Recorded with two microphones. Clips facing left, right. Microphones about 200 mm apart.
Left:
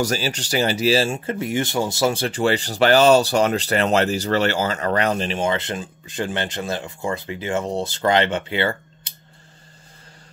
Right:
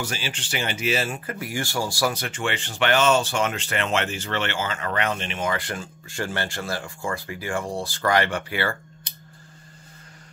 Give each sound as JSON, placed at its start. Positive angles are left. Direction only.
{"t": 0.0, "sound": "speech", "side_deg": 40}